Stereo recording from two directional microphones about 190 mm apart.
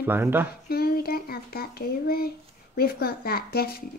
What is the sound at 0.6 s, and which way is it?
Speech, 55° left (ahead or behind).